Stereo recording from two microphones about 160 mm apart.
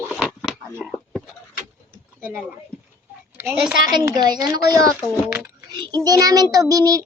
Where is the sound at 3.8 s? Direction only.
20° right (ahead or behind).